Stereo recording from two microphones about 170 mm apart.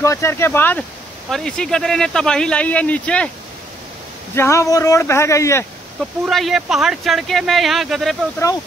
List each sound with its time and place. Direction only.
0.0 s speech: 15° left (ahead or behind)
4.4 s speech: 15° left (ahead or behind)
6.2 s speech: centre (ahead or behind)